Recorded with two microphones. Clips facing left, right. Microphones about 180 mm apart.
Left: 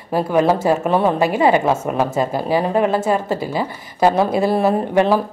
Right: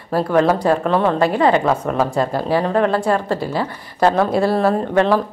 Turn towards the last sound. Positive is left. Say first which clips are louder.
# even
turn(degrees=10)  # may be behind; listen again after turning